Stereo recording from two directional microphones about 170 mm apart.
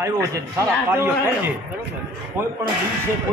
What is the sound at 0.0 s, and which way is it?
A man's voice, 20° right (ahead or behind).